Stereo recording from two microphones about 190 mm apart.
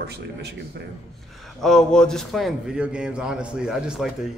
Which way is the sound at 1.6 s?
5° left (ahead or behind).